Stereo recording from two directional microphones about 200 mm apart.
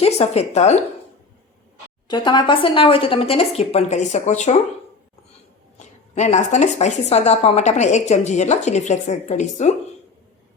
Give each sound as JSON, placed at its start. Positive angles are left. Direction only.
{"t": 0.0, "sound": "a woman's voice", "side_deg": 30}
{"t": 2.0, "sound": "speech", "side_deg": 20}
{"t": 6.1, "sound": "a woman's voice", "side_deg": 35}